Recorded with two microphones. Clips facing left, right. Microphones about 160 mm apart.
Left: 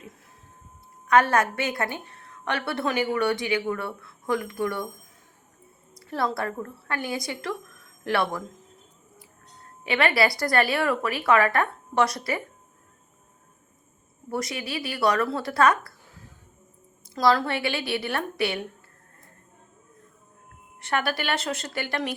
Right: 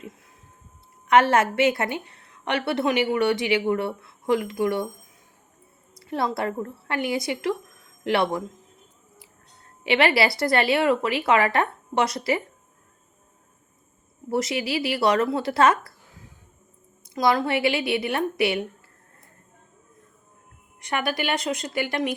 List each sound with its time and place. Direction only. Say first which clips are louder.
1.0 s a woman's voice: right 2 dB; 25° right (ahead or behind)
6.1 s a woman's voice: right 2 dB; 20° right (ahead or behind)
9.8 s a woman's voice: right 2 dB; 30° right (ahead or behind)
14.3 s a woman's voice: right 5 dB; 25° right (ahead or behind)
17.2 s a woman's voice: right 1 dB; 20° right (ahead or behind)
20.9 s a woman's voice: right 1 dB; 15° right (ahead or behind)